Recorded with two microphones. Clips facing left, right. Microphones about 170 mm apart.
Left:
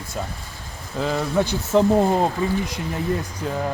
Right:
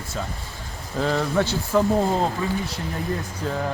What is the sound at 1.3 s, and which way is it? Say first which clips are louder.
A man's voice: left 5 dB; 15° left (ahead or behind).